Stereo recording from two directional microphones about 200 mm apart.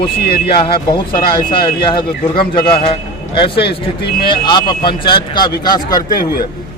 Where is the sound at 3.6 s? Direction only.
55° left (ahead or behind).